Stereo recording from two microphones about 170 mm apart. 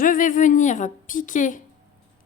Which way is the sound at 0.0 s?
50° left (ahead or behind).